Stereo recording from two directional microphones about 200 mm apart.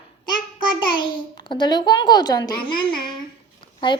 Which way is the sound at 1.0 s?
25° left (ahead or behind).